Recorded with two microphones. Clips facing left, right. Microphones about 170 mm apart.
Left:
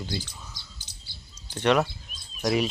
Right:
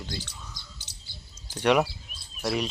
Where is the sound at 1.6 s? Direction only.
10° right (ahead or behind).